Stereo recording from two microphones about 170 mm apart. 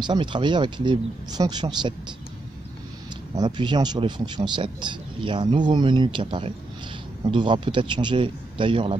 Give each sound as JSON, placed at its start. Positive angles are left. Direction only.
{"t": 0.0, "sound": "speech", "side_deg": -25}
{"t": 3.3, "sound": "speech", "side_deg": -25}